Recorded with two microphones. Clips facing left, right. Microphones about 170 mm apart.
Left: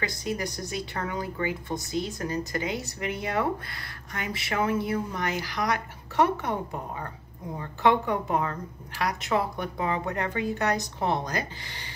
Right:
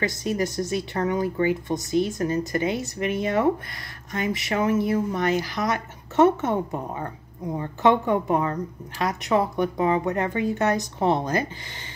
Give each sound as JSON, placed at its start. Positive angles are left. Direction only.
{"t": 0.4, "sound": "speech", "side_deg": -20}